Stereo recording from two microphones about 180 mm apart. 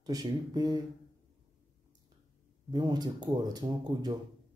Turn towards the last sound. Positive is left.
turn(degrees=-20)  # may be behind; listen again after turning